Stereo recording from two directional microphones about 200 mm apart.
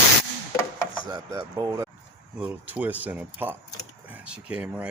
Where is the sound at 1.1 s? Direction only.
15° right (ahead or behind).